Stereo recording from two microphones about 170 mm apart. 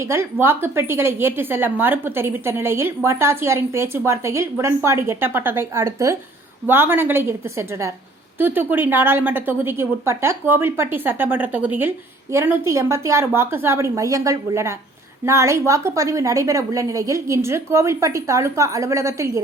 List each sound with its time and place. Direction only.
0.0 s a woman's voice: 15° right (ahead or behind)